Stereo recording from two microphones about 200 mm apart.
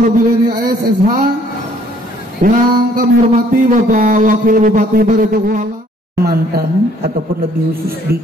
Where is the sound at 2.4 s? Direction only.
45° right (ahead or behind).